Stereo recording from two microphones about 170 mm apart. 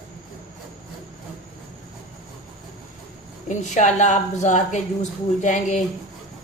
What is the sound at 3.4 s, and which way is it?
A woman's voice, 45° left (ahead or behind).